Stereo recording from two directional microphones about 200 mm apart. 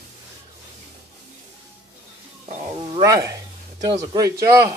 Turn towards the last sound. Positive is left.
turn(degrees=-15)  # may be behind; listen again after turning